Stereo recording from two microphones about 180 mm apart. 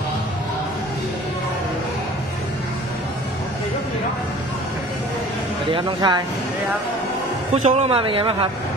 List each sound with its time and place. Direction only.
5.7 s speech: 30° right (ahead or behind)
7.6 s speech: 35° right (ahead or behind)